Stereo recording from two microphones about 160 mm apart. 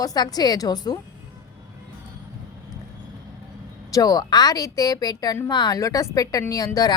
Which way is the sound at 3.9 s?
20° left (ahead or behind).